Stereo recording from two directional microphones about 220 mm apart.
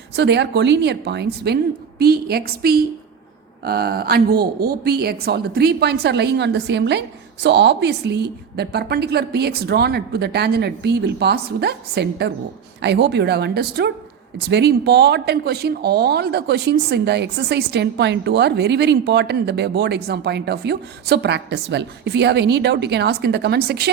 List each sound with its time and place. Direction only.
0.2 s speech: 50° right (ahead or behind)